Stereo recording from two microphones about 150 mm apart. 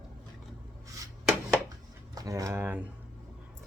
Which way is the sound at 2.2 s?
20° right (ahead or behind).